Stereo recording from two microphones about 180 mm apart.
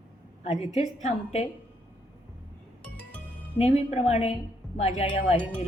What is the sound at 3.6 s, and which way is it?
A woman's voice, 35° left (ahead or behind).